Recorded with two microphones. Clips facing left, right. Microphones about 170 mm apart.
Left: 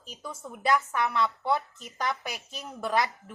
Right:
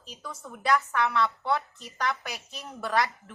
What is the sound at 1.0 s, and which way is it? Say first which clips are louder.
Speech: even; centre (ahead or behind).